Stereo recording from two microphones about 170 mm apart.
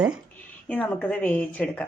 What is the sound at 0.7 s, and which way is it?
A woman's voice, 10° left (ahead or behind).